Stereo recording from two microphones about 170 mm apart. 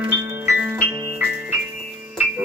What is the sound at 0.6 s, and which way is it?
Music, 10° right (ahead or behind).